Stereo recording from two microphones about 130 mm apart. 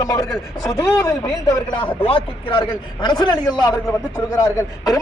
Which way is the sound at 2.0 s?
45° left (ahead or behind).